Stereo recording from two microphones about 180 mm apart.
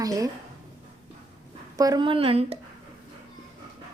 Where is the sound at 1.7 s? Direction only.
20° right (ahead or behind).